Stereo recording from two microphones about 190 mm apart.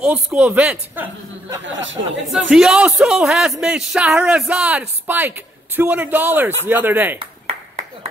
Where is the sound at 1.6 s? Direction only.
75° right (ahead or behind).